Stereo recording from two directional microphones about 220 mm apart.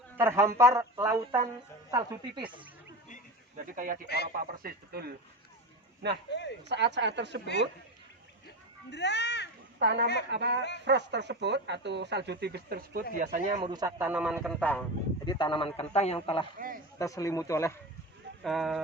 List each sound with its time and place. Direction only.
0.2 s a man's voice: 10° right (ahead or behind)
3.8 s speech: 40° right (ahead or behind)
6.3 s speech: 50° left (ahead or behind)
6.7 s speech: 50° right (ahead or behind)
7.4 s speech: 50° left (ahead or behind)
8.9 s a child's voice: 50° left (ahead or behind)
9.7 s speech: 50° right (ahead or behind); by 13.7 s 30° right (ahead or behind)
13.7 s speech: 15° right (ahead or behind); by 14.8 s 5° left (ahead or behind)
15.2 s a man's voice: 20° left (ahead or behind)
16.6 s speech: 40° right (ahead or behind)
17.0 s speech: 15° left (ahead or behind)
18.4 s speech: centre (ahead or behind)